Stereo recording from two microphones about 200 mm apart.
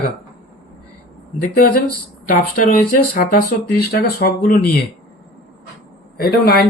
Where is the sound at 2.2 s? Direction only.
45° left (ahead or behind).